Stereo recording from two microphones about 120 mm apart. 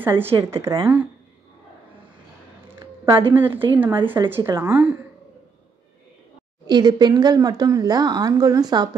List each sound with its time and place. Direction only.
0.0 s a woman's voice: 15° right (ahead or behind)
3.2 s a woman's voice: 15° right (ahead or behind)
6.7 s a woman's voice: 35° right (ahead or behind)